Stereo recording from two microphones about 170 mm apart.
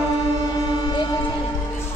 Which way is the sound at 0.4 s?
25° left (ahead or behind).